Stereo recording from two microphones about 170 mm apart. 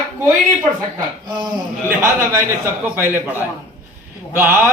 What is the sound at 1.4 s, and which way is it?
Speech, 25° right (ahead or behind).